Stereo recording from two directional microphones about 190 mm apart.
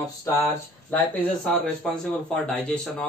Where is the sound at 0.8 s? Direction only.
5° left (ahead or behind).